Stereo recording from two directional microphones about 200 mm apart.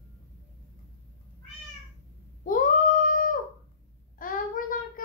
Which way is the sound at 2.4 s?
40° left (ahead or behind).